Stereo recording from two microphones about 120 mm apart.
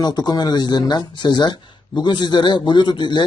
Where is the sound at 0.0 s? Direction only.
35° left (ahead or behind).